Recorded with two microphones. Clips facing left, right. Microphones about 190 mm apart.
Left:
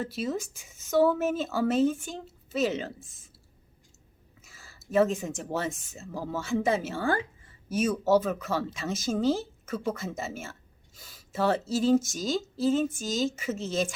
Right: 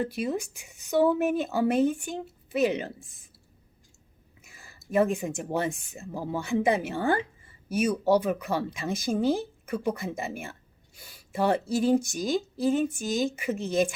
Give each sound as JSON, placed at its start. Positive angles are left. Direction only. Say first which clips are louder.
{"t": 0.0, "sound": "speech", "louder": "right 2 dB", "side_deg": -15}
{"t": 4.4, "sound": "a sound", "louder": "right 1 dB", "side_deg": -15}
{"t": 5.1, "sound": "speech", "louder": "right 2 dB", "side_deg": -15}
{"t": 5.6, "sound": "speech", "louder": "right 2 dB", "side_deg": -60}
{"t": 6.0, "sound": "speech", "louder": "right 1 dB", "side_deg": -15}